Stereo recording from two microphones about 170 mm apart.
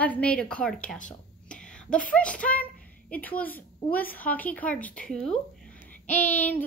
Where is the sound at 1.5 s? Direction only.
5° left (ahead or behind).